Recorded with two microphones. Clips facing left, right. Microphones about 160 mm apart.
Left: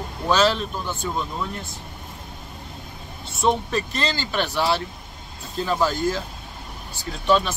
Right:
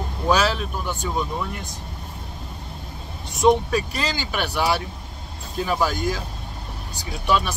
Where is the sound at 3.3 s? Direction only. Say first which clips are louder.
Right 4 dB; 15° right (ahead or behind).